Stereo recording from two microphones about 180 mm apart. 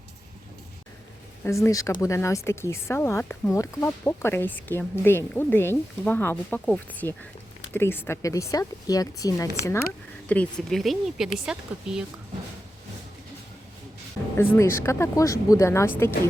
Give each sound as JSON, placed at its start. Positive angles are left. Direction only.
{"t": 1.5, "sound": "speech", "side_deg": 15}
{"t": 10.2, "sound": "speech", "side_deg": 10}
{"t": 14.3, "sound": "speech", "side_deg": 15}